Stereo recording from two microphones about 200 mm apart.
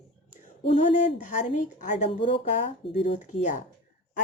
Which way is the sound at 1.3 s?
40° left (ahead or behind).